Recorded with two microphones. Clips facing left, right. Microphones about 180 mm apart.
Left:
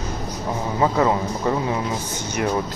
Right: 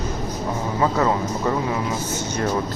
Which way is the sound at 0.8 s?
15° left (ahead or behind).